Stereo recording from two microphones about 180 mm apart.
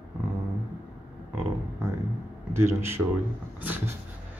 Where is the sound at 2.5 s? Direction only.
15° right (ahead or behind).